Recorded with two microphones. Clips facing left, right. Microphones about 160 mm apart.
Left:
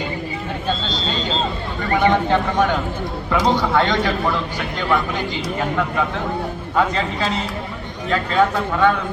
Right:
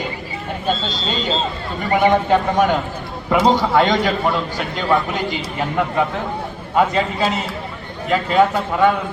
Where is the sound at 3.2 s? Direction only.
15° right (ahead or behind).